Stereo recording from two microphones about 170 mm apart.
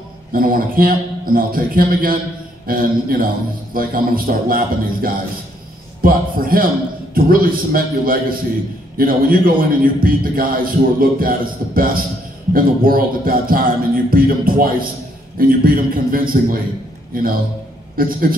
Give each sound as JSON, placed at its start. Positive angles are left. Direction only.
{"t": 0.3, "sound": "a man's voice", "side_deg": -55}